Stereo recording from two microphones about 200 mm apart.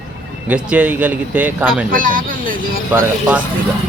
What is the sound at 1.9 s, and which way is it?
Speech, 45° right (ahead or behind).